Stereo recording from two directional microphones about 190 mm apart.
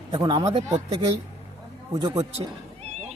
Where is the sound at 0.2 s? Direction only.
25° right (ahead or behind).